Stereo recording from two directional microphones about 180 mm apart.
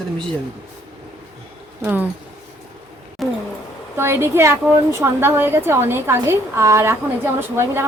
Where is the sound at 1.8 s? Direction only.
10° right (ahead or behind).